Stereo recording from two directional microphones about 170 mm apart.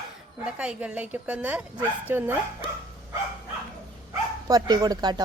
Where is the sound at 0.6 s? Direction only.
5° right (ahead or behind).